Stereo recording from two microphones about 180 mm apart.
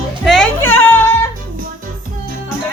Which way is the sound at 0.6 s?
10° left (ahead or behind).